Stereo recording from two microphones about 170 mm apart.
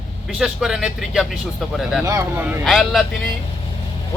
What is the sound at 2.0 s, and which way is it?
Speech, 20° right (ahead or behind).